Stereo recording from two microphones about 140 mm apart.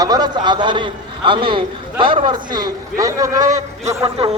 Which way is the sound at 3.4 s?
60° right (ahead or behind).